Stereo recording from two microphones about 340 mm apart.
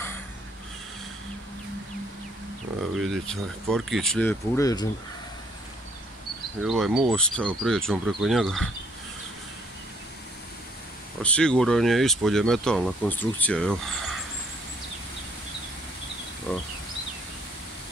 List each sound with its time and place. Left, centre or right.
3.0 s speech: centre
6.6 s speech: centre
11.2 s speech: centre